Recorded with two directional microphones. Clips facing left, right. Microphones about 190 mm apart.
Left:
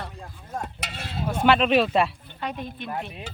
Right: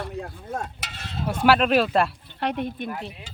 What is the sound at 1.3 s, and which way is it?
Speech, 5° right (ahead or behind).